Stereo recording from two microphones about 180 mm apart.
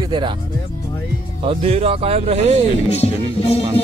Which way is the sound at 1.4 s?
35° right (ahead or behind).